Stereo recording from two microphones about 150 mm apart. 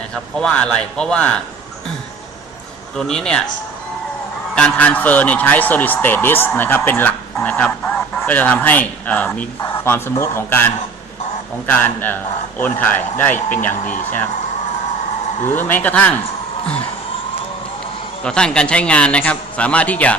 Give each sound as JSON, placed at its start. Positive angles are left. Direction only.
{"t": 0.1, "sound": "a man's voice", "side_deg": 5}
{"t": 2.9, "sound": "speech", "side_deg": 5}
{"t": 4.5, "sound": "a man's voice", "side_deg": 10}
{"t": 15.4, "sound": "a man's voice", "side_deg": 15}
{"t": 18.2, "sound": "a man's voice", "side_deg": 5}